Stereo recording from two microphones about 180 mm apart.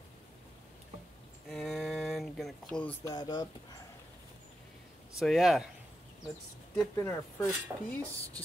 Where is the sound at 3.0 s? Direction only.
20° left (ahead or behind).